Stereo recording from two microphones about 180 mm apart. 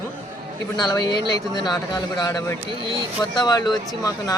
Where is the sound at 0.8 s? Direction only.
20° left (ahead or behind).